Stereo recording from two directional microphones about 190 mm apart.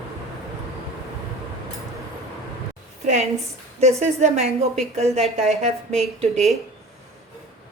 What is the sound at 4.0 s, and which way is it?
A woman's voice, 35° right (ahead or behind).